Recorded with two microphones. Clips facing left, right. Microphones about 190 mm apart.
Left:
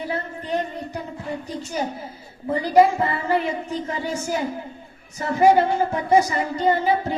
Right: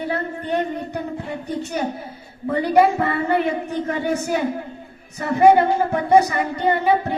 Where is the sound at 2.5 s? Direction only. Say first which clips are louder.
Even; 60° right (ahead or behind).